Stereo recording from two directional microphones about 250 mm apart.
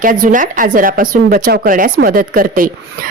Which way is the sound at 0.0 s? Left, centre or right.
Right.